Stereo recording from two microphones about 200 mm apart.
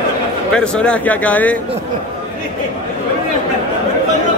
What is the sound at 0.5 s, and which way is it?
Speech, 5° left (ahead or behind).